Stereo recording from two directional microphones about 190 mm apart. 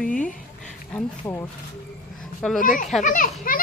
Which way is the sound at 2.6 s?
45° left (ahead or behind).